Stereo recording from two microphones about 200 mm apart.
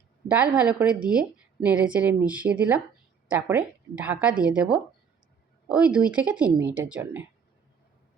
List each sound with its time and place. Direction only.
0.3 s a woman's voice: 5° right (ahead or behind)